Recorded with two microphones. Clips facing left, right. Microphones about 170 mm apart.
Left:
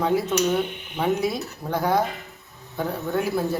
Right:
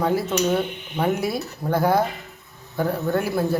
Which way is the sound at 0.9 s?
5° right (ahead or behind).